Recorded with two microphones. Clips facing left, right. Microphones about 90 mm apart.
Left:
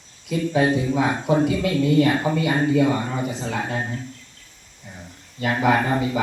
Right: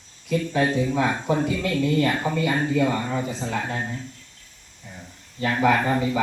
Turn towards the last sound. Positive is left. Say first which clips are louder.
# left 1 dB
turn(degrees=15)  # may be behind; listen again after turning